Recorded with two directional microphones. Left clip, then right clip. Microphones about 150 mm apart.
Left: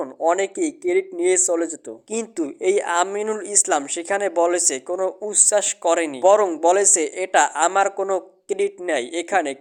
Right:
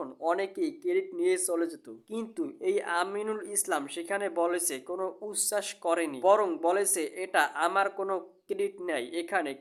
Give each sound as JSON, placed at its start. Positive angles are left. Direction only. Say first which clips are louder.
{"t": 0.0, "sound": "speech", "louder": "left 10 dB", "side_deg": 25}